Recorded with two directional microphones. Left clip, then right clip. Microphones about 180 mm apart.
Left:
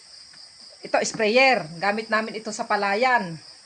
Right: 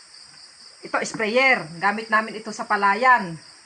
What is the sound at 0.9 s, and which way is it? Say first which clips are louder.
Speech: left 2 dB; 40° left (ahead or behind).